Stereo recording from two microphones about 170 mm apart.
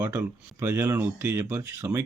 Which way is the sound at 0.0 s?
15° right (ahead or behind).